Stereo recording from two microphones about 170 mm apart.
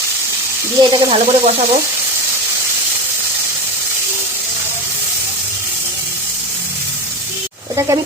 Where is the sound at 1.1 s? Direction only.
35° right (ahead or behind).